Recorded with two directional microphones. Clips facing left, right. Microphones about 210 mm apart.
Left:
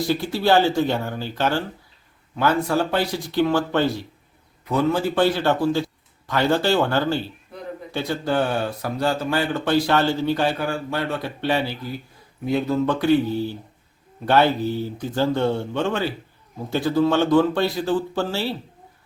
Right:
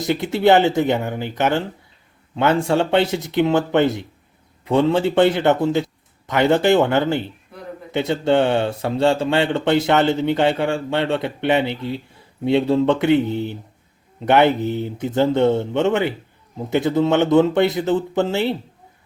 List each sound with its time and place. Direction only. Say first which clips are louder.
0.0 s speech: right 4 dB; 20° right (ahead or behind)